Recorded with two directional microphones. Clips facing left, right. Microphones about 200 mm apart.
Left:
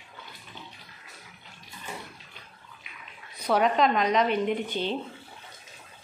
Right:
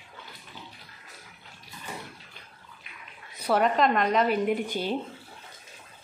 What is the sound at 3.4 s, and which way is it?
Speech, centre (ahead or behind).